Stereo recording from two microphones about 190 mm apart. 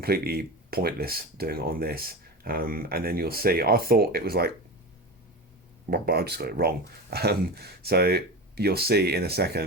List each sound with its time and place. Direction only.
0.0 s speech: 55° right (ahead or behind)
5.9 s speech: 55° right (ahead or behind)